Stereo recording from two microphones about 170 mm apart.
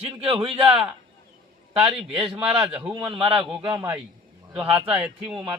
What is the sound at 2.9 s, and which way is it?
A man's voice, 25° right (ahead or behind).